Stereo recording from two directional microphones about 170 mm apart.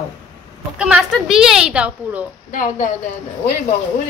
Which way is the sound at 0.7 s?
5° right (ahead or behind).